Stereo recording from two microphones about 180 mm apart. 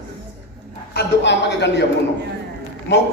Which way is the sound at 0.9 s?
75° left (ahead or behind).